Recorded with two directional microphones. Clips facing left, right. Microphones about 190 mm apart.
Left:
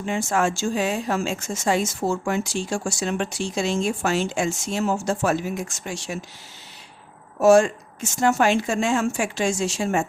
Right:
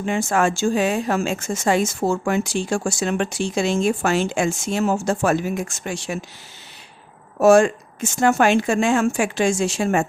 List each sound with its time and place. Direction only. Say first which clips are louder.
0.0 s a woman's voice: right 3 dB; 60° right (ahead or behind)
7.3 s a woman's voice: right 2 dB; 55° right (ahead or behind)